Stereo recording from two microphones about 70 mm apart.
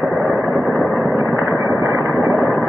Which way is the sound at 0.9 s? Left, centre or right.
Right.